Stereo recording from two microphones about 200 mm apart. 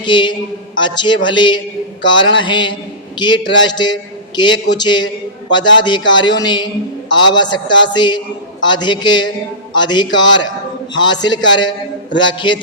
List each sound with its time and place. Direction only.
0.0 s a man's voice: 25° left (ahead or behind)